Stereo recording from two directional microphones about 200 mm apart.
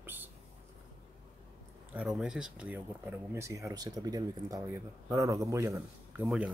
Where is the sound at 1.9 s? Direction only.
5° right (ahead or behind).